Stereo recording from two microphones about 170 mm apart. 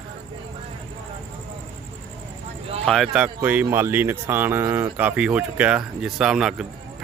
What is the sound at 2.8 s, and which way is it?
A man's voice, centre (ahead or behind).